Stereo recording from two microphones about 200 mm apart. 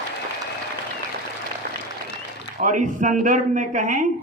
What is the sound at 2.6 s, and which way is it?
A man's voice, 40° right (ahead or behind).